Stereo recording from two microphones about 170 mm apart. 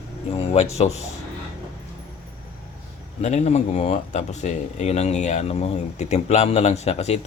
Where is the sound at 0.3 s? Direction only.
35° left (ahead or behind).